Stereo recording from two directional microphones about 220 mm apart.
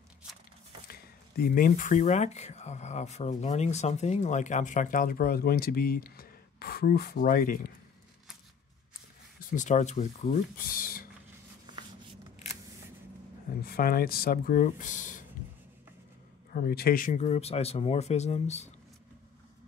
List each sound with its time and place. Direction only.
0.8 s speech: 45° left (ahead or behind)
9.5 s speech: 35° left (ahead or behind)
10.6 s speech: 40° left (ahead or behind)
13.6 s speech: 45° left (ahead or behind)
15.4 s writing: 40° left (ahead or behind)
16.5 s speech: 45° left (ahead or behind)